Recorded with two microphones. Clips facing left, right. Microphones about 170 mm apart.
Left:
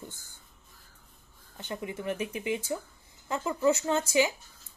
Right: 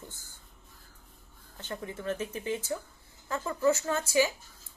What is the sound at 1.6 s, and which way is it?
Speech, 15° left (ahead or behind).